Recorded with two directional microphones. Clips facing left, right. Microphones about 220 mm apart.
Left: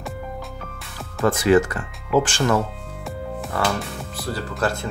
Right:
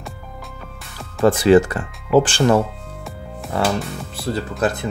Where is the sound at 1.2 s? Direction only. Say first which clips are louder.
Right 4 dB; 30° right (ahead or behind).